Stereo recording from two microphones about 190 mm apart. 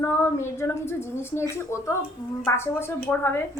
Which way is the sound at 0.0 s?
15° left (ahead or behind).